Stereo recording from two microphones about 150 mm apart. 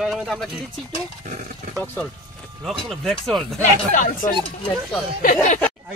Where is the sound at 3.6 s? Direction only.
55° left (ahead or behind).